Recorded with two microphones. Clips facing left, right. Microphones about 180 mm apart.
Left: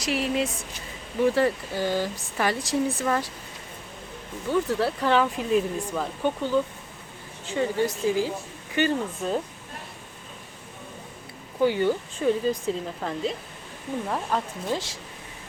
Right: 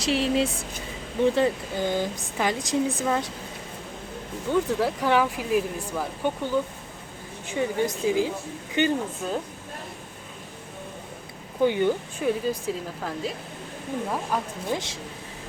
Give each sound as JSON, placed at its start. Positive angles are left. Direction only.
{"t": 0.0, "sound": "speech", "side_deg": -30}
{"t": 4.8, "sound": "speech", "side_deg": -15}
{"t": 9.2, "sound": "speech", "side_deg": 0}
{"t": 11.6, "sound": "speech", "side_deg": -20}
{"t": 14.3, "sound": "speech", "side_deg": -15}